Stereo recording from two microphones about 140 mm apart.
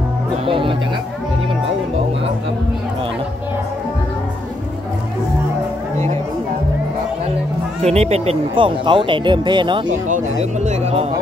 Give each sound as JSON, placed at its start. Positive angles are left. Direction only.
{"t": 0.5, "sound": "speech", "side_deg": -40}
{"t": 7.8, "sound": "speech", "side_deg": -50}
{"t": 10.0, "sound": "speech", "side_deg": -60}